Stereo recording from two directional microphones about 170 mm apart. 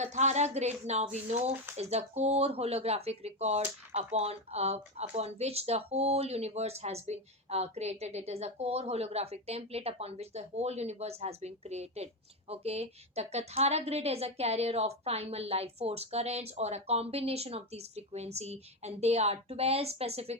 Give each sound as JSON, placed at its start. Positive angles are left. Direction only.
{"t": 0.0, "sound": "speech", "side_deg": -40}